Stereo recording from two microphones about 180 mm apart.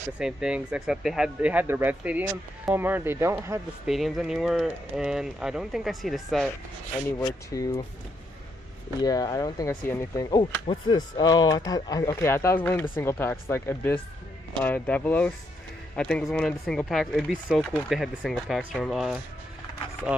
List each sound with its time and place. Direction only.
0.2 s speech: 5° right (ahead or behind)
3.8 s speech: centre (ahead or behind)
7.2 s speech: 20° left (ahead or behind)
9.0 s speech: 20° left (ahead or behind); by 20.2 s 5° right (ahead or behind)